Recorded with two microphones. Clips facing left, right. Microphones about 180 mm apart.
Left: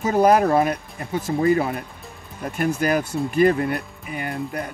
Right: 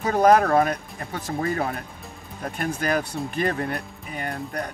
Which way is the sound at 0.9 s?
20° left (ahead or behind).